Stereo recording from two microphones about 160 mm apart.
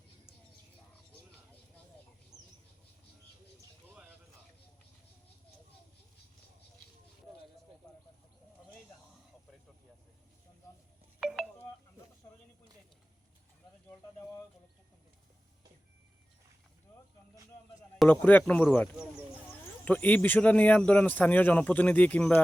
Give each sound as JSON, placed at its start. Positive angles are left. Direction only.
{"t": 2.3, "sound": "bird", "side_deg": 20}
{"t": 11.2, "sound": "telephone dialing", "side_deg": -5}
{"t": 18.1, "sound": "speech", "side_deg": 10}